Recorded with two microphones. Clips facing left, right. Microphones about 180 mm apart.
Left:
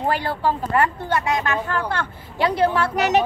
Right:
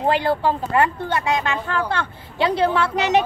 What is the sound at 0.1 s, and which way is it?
Speech, 25° right (ahead or behind).